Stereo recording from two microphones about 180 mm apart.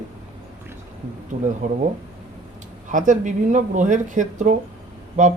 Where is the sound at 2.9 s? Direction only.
45° right (ahead or behind).